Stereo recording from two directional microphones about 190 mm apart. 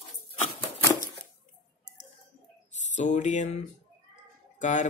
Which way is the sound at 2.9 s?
40° left (ahead or behind).